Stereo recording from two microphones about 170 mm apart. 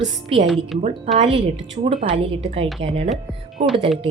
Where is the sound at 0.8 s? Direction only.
40° right (ahead or behind).